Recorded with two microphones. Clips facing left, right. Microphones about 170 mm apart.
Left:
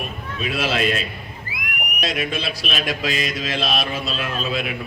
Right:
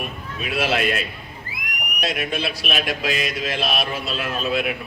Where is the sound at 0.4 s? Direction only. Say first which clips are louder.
Even; 55° right (ahead or behind).